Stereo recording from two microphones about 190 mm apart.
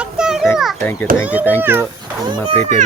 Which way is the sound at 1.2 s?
10° right (ahead or behind).